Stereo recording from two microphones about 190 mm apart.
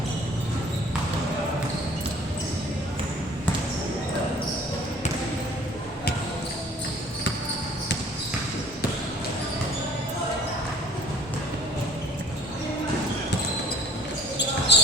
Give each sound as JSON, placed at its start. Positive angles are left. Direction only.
{"t": 14.7, "sound": "basketball bounce", "side_deg": 65}